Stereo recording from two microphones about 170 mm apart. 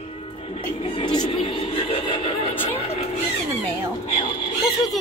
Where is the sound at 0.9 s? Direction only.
25° left (ahead or behind).